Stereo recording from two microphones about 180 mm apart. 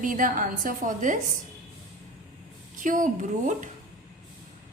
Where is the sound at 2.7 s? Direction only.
45° right (ahead or behind).